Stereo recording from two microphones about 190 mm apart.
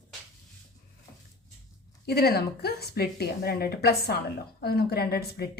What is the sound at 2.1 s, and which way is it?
A woman's voice, 55° left (ahead or behind).